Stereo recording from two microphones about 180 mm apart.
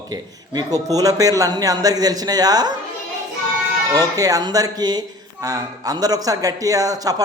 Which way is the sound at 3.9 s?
20° right (ahead or behind).